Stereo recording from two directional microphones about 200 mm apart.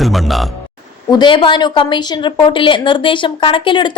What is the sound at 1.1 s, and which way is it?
A woman's voice, 25° left (ahead or behind).